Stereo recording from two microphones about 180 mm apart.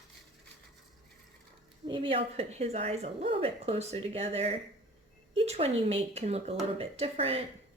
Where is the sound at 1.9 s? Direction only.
30° right (ahead or behind).